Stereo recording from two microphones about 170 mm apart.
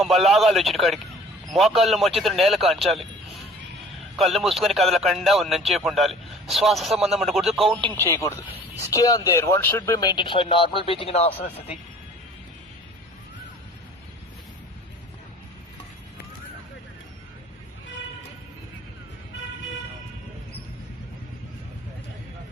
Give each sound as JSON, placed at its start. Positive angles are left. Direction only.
{"t": 0.0, "sound": "speech", "side_deg": 0}
{"t": 4.2, "sound": "speech", "side_deg": 0}
{"t": 8.0, "sound": "speech", "side_deg": 15}